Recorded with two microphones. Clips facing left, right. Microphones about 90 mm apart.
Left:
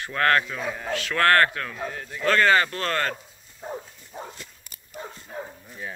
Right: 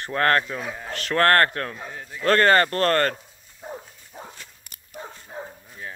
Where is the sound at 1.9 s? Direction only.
5° right (ahead or behind).